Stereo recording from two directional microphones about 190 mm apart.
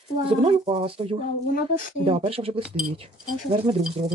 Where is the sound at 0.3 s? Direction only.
30° right (ahead or behind).